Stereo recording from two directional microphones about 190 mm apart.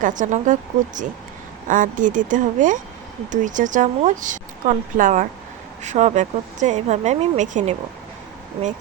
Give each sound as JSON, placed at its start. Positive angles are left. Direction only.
{"t": 0.0, "sound": "a woman's voice", "side_deg": -40}